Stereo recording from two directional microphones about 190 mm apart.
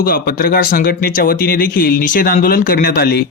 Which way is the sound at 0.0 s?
50° left (ahead or behind).